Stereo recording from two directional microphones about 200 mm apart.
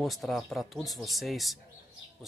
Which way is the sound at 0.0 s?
Centre (ahead or behind).